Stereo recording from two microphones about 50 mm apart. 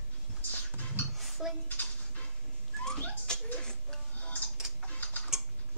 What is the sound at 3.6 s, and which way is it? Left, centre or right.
Music, centre.